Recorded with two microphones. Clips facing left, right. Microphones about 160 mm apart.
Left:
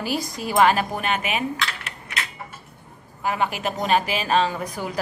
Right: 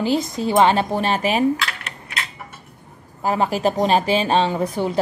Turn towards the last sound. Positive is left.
turn(degrees=-25)  # may be behind; listen again after turning